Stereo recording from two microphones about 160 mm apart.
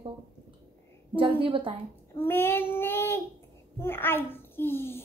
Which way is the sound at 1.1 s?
35° right (ahead or behind).